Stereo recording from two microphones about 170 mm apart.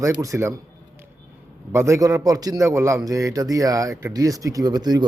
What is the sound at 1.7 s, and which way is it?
A man's voice, 15° right (ahead or behind).